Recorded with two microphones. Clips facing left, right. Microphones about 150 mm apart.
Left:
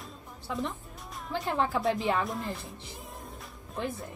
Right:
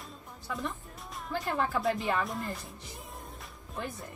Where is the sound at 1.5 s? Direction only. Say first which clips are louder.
Left 2 dB; 25° left (ahead or behind).